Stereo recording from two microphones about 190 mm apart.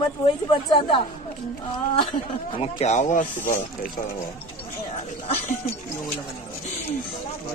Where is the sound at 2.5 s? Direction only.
35° left (ahead or behind).